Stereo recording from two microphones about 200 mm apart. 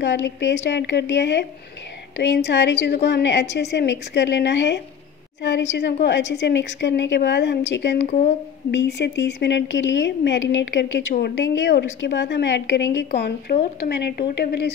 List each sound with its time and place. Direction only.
0.0 s a woman's voice: 65° left (ahead or behind)
8.0 s a woman's voice: 35° left (ahead or behind)
8.7 s a woman's voice: 60° left (ahead or behind)